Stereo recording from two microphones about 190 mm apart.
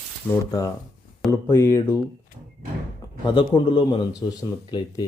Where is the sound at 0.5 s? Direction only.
20° left (ahead or behind).